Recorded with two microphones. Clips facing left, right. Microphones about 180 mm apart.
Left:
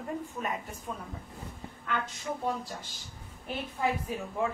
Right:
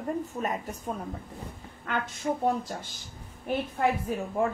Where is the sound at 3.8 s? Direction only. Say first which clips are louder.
Right 3 dB; 60° right (ahead or behind).